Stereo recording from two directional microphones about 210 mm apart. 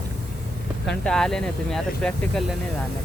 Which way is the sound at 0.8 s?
5° left (ahead or behind).